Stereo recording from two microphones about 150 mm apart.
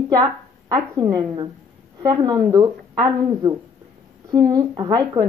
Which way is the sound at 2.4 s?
20° right (ahead or behind).